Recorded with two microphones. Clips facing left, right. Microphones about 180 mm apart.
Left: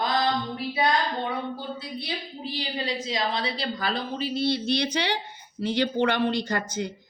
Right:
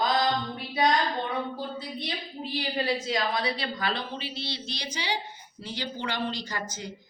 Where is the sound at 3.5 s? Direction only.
35° left (ahead or behind); by 6.9 s 60° left (ahead or behind).